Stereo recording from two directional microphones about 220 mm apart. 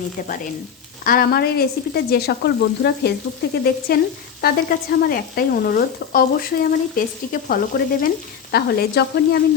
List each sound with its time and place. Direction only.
1.0 s speech: 40° left (ahead or behind)
7.4 s frying: 40° left (ahead or behind)
8.5 s speech: 50° left (ahead or behind)